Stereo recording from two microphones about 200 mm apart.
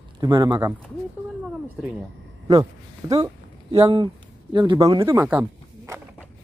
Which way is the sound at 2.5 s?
20° right (ahead or behind).